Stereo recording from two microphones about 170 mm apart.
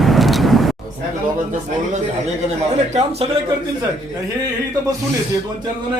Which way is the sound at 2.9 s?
40° right (ahead or behind).